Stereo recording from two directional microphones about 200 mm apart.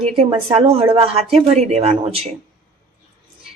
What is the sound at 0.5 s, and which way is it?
A woman's voice, 30° right (ahead or behind).